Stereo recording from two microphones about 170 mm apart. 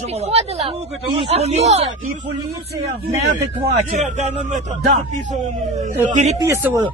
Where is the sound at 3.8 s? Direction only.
40° right (ahead or behind).